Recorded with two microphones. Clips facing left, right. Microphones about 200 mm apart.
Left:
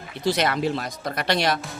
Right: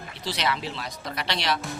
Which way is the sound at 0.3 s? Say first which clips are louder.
Left 7 dB; 50° left (ahead or behind).